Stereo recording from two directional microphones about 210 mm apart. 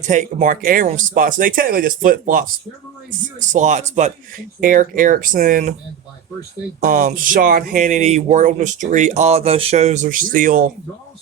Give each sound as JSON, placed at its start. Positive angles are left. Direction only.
{"t": 0.0, "sound": "speech", "side_deg": -35}
{"t": 6.8, "sound": "speech", "side_deg": -40}